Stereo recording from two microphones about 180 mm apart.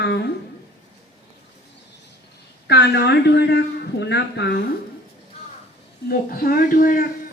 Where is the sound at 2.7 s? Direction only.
70° left (ahead or behind).